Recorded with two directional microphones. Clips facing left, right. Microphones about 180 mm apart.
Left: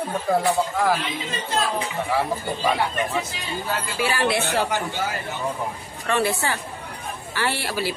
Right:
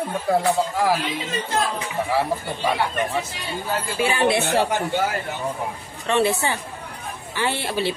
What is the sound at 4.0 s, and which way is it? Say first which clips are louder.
Speech: right 3 dB; 20° right (ahead or behind).